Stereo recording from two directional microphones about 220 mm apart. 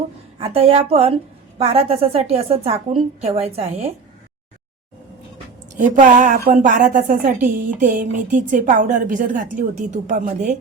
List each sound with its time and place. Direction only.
0.3 s a woman's voice: 25° right (ahead or behind)
5.7 s a woman's voice: 35° right (ahead or behind)